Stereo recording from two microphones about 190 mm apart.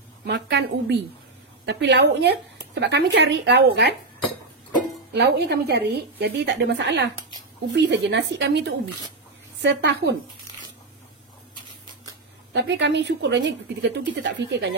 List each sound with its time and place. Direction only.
0.2 s speech: 65° right (ahead or behind)
5.1 s a woman's voice: 65° right (ahead or behind)
12.6 s a woman's voice: 70° right (ahead or behind)